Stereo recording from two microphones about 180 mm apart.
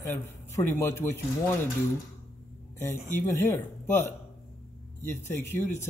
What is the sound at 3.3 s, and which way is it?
Speech, 15° left (ahead or behind).